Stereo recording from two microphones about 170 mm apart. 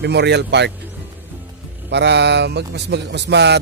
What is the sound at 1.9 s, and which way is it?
Speech, 85° right.